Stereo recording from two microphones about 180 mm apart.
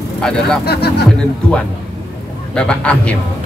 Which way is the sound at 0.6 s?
65° left (ahead or behind).